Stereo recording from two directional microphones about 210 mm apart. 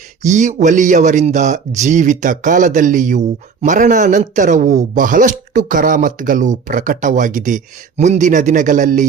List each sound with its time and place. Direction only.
0.2 s speech: 35° right (ahead or behind)